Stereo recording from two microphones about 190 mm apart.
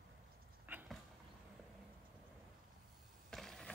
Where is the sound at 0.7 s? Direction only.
10° right (ahead or behind).